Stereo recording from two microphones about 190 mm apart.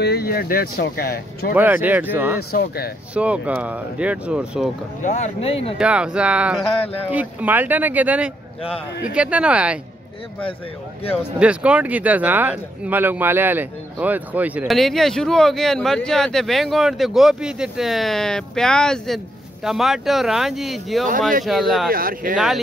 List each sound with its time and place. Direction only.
0.0 s speech: 55° left (ahead or behind)
1.5 s speech: 10° right (ahead or behind)
2.5 s speech: 55° left (ahead or behind)
3.2 s speech: 5° right (ahead or behind)
5.0 s speech: 40° left (ahead or behind)
5.8 s speech: 5° right (ahead or behind)
11.3 s speech: 5° right (ahead or behind)
21.9 s speech: 50° right (ahead or behind)